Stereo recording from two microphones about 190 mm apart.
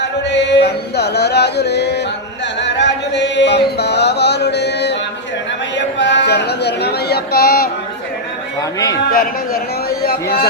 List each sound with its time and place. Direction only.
0.0 s music: 65° left (ahead or behind)
2.6 s chant: 65° left (ahead or behind)
5.7 s a sound: 70° left (ahead or behind); by 7.7 s 55° left (ahead or behind)
9.1 s a man's voice: 50° left (ahead or behind)